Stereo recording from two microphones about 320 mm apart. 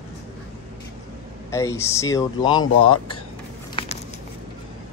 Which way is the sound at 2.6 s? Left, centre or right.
Left.